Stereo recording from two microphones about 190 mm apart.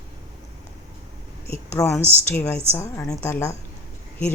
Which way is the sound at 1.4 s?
15° left (ahead or behind).